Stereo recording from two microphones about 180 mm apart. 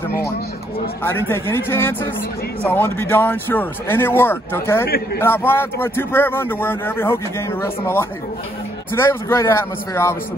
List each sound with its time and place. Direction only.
1.0 s a man's voice: 15° left (ahead or behind)
4.8 s a man's voice: 60° left (ahead or behind)
5.2 s a man's voice: 10° left (ahead or behind)